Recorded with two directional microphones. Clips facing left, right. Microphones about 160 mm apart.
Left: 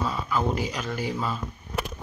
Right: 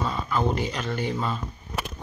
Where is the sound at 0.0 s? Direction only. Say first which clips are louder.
Right 1 dB; 5° left (ahead or behind).